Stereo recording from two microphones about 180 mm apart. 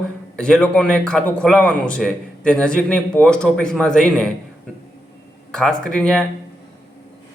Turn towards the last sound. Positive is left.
turn(degrees=5)  # may be behind; listen again after turning